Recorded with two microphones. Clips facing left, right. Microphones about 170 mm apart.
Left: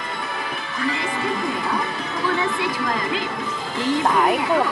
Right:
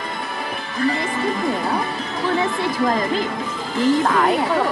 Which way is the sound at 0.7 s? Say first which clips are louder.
Right 5 dB; 40° right (ahead or behind).